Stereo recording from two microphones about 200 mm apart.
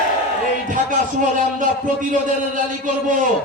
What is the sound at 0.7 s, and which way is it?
A man's voice, 40° right (ahead or behind).